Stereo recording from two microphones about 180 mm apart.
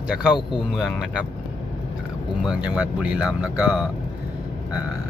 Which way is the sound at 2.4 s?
5° right (ahead or behind).